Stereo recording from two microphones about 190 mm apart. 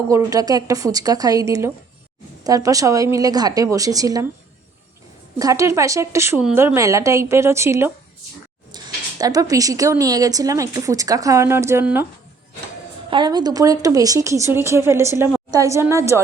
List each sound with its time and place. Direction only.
0.1 s a woman's voice: 20° right (ahead or behind)
5.4 s speech: 15° right (ahead or behind)
13.1 s a woman's voice: 25° right (ahead or behind)